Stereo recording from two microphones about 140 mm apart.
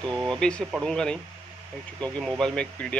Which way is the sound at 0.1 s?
5° left (ahead or behind).